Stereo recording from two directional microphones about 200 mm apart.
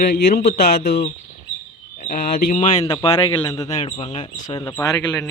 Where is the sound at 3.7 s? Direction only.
35° left (ahead or behind).